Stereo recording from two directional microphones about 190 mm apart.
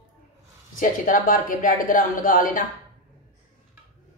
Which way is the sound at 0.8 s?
45° left (ahead or behind).